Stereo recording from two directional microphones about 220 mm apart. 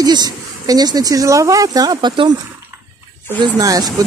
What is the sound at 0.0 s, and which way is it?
Speech, 20° right (ahead or behind).